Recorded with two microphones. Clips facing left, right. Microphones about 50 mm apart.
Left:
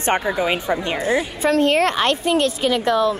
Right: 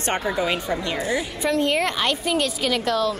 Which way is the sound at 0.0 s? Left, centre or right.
Left.